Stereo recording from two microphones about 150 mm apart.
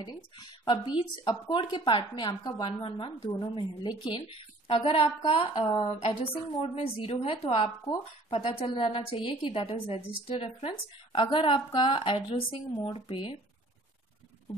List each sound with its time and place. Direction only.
0.0 s a woman's voice: 30° left (ahead or behind)